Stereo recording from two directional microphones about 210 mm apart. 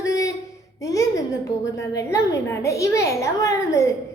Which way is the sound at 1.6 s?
15° left (ahead or behind).